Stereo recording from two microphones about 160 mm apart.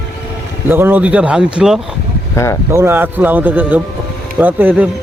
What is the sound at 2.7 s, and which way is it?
Speech, 15° right (ahead or behind).